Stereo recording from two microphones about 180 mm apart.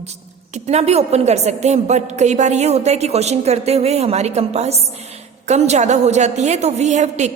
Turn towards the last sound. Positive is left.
turn(degrees=-40)  # may be behind; listen again after turning